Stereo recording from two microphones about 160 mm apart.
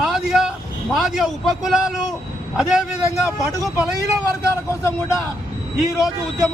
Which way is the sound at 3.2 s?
20° left (ahead or behind).